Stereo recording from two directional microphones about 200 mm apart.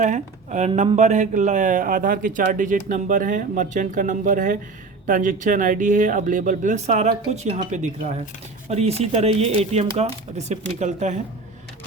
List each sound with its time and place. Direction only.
0.0 s speech: 35° right (ahead or behind)